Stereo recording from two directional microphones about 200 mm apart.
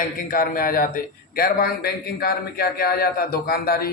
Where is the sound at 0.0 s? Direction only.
45° left (ahead or behind).